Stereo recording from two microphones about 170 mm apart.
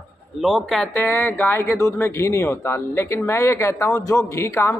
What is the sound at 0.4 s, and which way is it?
Speech, centre (ahead or behind).